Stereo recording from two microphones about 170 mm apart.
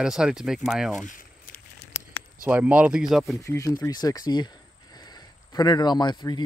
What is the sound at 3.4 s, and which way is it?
Speech, 20° left (ahead or behind).